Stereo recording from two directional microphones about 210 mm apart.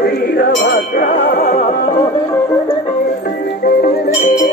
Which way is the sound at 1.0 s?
45° left (ahead or behind).